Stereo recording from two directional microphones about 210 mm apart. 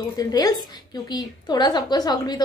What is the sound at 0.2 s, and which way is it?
A woman's voice, 15° left (ahead or behind).